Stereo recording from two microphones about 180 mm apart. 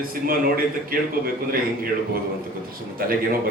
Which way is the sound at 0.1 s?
55° right (ahead or behind).